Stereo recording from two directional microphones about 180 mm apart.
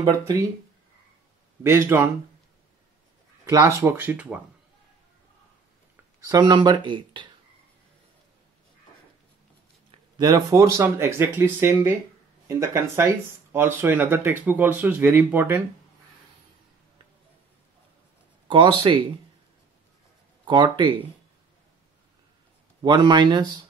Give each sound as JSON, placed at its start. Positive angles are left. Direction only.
{"t": 0.0, "sound": "speech", "side_deg": -15}
{"t": 1.6, "sound": "speech", "side_deg": -15}
{"t": 3.4, "sound": "speech", "side_deg": -15}
{"t": 6.2, "sound": "speech", "side_deg": -25}
{"t": 9.8, "sound": "speech", "side_deg": -20}
{"t": 18.5, "sound": "speech", "side_deg": -25}
{"t": 20.4, "sound": "speech", "side_deg": -25}
{"t": 22.8, "sound": "speech", "side_deg": -25}